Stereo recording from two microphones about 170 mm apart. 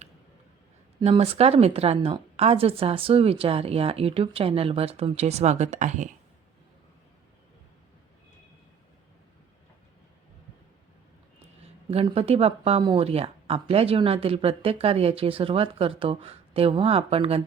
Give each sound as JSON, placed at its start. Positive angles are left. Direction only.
{"t": 1.0, "sound": "speech", "side_deg": -35}
{"t": 12.1, "sound": "speech", "side_deg": -35}